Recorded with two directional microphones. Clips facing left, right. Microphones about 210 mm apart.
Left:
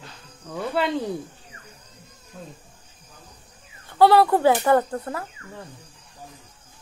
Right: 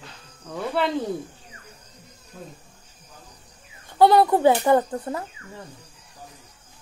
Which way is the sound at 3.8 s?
20° right (ahead or behind).